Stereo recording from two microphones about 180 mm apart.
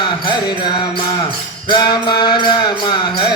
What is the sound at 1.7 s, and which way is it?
Music, 25° left (ahead or behind).